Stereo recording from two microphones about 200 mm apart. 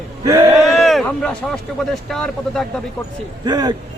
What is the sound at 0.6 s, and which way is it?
Speech, centre (ahead or behind).